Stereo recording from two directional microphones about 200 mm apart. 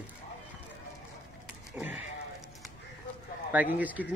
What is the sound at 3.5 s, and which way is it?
Speech, 10° right (ahead or behind).